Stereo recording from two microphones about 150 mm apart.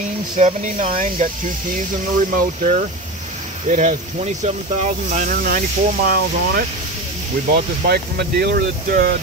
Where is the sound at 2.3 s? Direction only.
65° right (ahead or behind); by 6.6 s 80° right.